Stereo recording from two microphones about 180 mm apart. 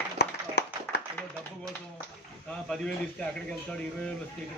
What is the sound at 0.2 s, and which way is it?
Clapping, 70° left (ahead or behind).